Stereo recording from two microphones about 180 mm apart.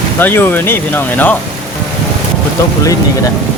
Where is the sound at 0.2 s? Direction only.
10° left (ahead or behind).